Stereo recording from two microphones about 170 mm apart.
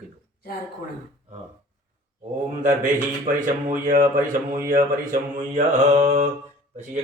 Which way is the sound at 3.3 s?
50° right (ahead or behind).